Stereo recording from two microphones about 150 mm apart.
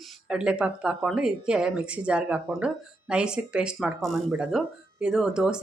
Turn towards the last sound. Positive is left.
turn(degrees=-5)  # may be behind; listen again after turning